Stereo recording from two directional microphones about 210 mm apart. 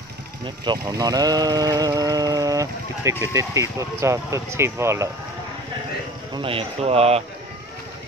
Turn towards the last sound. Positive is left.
turn(degrees=-30)  # may be behind; listen again after turning